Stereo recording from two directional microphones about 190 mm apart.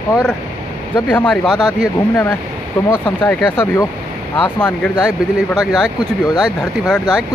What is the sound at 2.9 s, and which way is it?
Speech, 10° left (ahead or behind).